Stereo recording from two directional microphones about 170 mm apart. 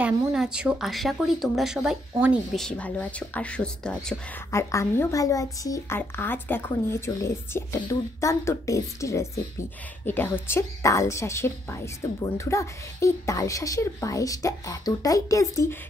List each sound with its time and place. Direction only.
0.0 s speech: 5° right (ahead or behind)
2.5 s a woman's voice: 5° left (ahead or behind)
4.5 s a woman's voice: 15° left (ahead or behind)